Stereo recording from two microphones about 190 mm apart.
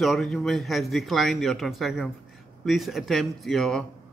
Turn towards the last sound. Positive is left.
turn(degrees=0)  # may be behind; listen again after turning